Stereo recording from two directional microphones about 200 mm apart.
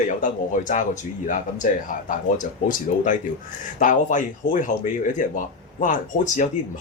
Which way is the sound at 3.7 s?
40° left (ahead or behind).